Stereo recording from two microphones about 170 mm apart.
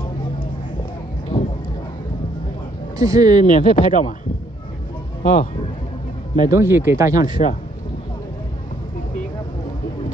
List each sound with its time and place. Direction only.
1.3 s a sound: 25° left (ahead or behind)
3.0 s speech: 20° right (ahead or behind)
3.5 s speech: 50° left (ahead or behind)
5.2 s speech: 50° left (ahead or behind)
6.5 s speech: 15° right (ahead or behind)
7.4 s speech: 45° left (ahead or behind)